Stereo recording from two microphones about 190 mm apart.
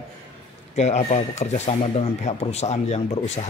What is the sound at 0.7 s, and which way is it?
Speech, 35° left (ahead or behind).